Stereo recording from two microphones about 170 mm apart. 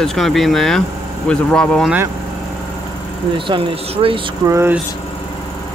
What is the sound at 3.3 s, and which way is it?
Speech, 30° right (ahead or behind).